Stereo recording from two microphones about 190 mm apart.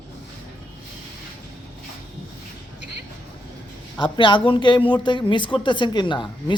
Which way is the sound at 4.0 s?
25° left (ahead or behind).